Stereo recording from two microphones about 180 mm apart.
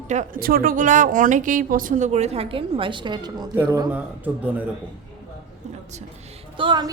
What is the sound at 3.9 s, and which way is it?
Speech, 10° right (ahead or behind).